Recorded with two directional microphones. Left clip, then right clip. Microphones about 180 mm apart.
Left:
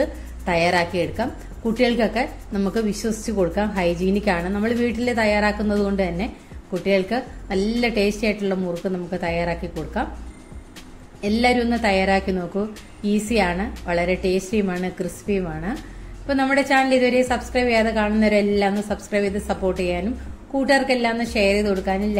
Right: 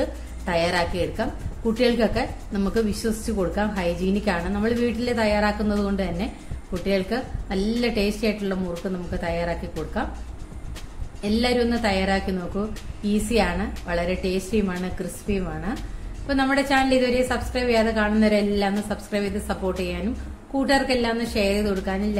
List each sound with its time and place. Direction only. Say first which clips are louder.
0.0 s a woman's voice: left 4 dB; 15° left (ahead or behind)
11.1 s a woman's voice: left 3 dB; 15° left (ahead or behind)